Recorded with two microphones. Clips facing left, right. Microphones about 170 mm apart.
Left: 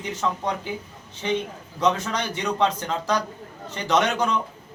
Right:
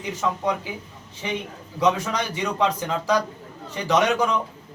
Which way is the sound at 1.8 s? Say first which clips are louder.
Right 1 dB; 10° right (ahead or behind).